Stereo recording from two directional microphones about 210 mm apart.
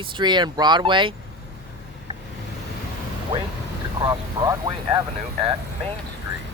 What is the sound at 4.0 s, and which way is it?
Speech, 15° right (ahead or behind).